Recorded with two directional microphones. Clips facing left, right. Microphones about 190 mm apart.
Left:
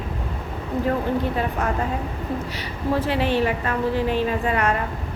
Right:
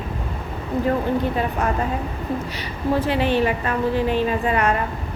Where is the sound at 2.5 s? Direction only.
15° right (ahead or behind).